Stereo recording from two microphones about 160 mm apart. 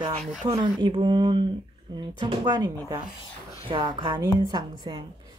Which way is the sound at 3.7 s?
30° right (ahead or behind).